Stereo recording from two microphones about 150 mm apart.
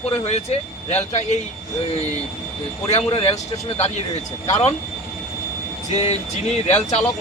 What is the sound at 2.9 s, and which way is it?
Speech, 40° left (ahead or behind).